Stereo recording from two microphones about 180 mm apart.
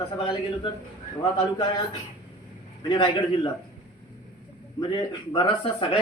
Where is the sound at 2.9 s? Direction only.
25° left (ahead or behind).